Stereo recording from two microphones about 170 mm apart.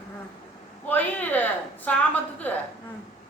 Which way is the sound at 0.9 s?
10° left (ahead or behind).